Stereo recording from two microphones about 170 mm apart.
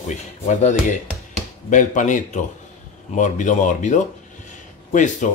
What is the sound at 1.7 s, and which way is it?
Speech, 50° left (ahead or behind).